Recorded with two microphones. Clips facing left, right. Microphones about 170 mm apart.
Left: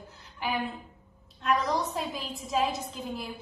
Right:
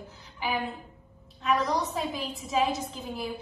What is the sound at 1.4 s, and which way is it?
Speech, centre (ahead or behind).